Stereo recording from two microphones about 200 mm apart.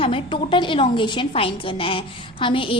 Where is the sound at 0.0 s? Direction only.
25° left (ahead or behind).